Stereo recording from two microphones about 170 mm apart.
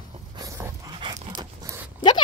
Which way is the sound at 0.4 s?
15° right (ahead or behind).